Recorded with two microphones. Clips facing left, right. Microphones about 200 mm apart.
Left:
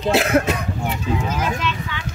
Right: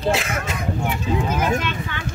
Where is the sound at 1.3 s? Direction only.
55° right (ahead or behind).